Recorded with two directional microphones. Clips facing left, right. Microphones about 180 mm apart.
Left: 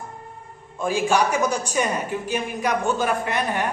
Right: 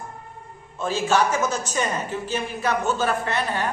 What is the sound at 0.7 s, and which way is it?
A man's voice, 10° left (ahead or behind).